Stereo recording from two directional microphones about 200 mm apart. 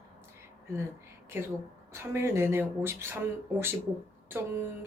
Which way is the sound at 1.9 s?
10° right (ahead or behind).